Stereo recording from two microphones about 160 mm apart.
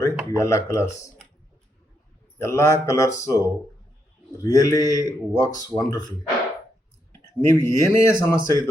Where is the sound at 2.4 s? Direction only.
15° left (ahead or behind).